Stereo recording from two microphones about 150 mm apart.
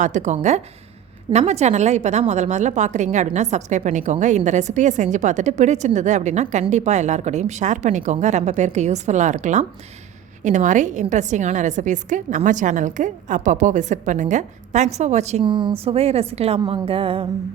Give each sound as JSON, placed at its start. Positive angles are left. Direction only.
{"t": 0.0, "sound": "a woman's voice", "side_deg": -55}
{"t": 15.4, "sound": "a woman's voice", "side_deg": -30}